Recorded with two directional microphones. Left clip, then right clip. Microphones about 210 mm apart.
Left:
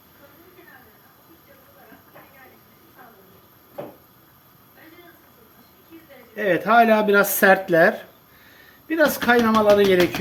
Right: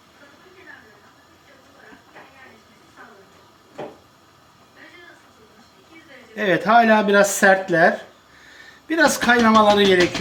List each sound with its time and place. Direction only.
6.3 s speech: 30° right (ahead or behind); by 7.9 s centre (ahead or behind)
8.6 s a man's voice: 30° right (ahead or behind)